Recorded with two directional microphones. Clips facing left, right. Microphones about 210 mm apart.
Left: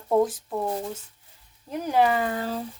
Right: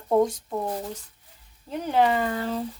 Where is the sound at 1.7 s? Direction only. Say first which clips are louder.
Even; 10° left (ahead or behind).